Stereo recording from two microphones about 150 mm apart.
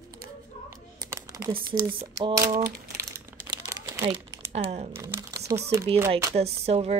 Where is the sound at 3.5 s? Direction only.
30° right (ahead or behind).